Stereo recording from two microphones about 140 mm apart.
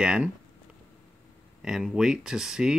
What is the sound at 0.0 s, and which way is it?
Speech, 5° right (ahead or behind).